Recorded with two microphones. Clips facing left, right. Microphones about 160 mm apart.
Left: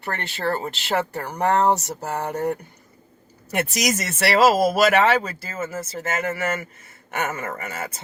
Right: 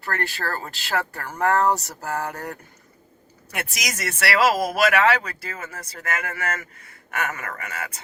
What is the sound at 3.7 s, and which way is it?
Speech, 25° left (ahead or behind).